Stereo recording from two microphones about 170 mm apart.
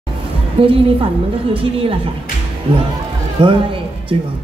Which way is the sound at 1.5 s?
30° right (ahead or behind).